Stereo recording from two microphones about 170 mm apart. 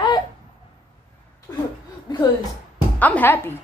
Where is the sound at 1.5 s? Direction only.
20° left (ahead or behind).